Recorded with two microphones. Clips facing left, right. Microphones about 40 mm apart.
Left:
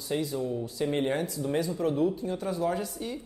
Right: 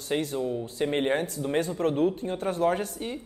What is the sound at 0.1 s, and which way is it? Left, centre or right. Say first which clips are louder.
Speech: right 2 dB; right.